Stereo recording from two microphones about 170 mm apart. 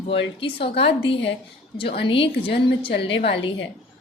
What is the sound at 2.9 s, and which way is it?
Speech, 90° left.